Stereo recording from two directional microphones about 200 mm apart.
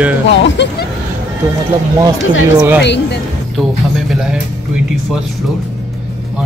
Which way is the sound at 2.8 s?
60° left (ahead or behind).